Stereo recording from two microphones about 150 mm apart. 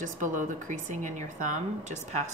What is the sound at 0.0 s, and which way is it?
Speech, 55° right (ahead or behind).